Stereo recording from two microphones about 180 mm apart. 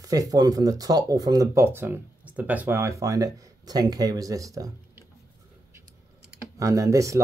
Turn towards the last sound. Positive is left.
turn(degrees=-15)  # may be behind; listen again after turning